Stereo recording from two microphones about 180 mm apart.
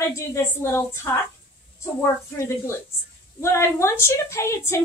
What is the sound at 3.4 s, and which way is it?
A woman's voice, 15° left (ahead or behind).